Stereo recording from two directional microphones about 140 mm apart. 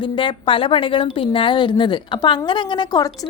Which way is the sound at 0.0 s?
35° left (ahead or behind).